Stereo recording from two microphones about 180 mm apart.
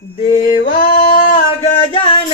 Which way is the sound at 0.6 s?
45° left (ahead or behind).